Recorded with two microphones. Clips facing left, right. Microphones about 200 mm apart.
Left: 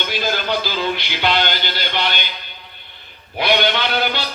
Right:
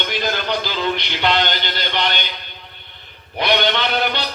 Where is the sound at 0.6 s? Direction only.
5° left (ahead or behind).